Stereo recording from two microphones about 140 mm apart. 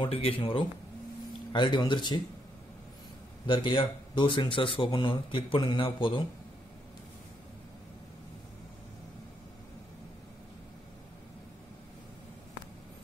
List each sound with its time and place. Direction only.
0.0 s speech: 40° left (ahead or behind)
3.4 s speech: 35° left (ahead or behind)